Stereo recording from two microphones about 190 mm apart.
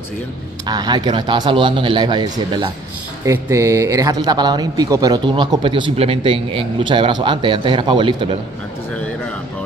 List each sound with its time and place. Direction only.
0.7 s speech: 20° right (ahead or behind)